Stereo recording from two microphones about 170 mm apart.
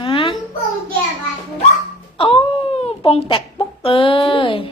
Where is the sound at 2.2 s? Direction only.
30° left (ahead or behind).